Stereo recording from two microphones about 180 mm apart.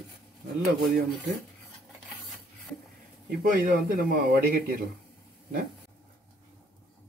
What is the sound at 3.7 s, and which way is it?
Speech, 55° right (ahead or behind).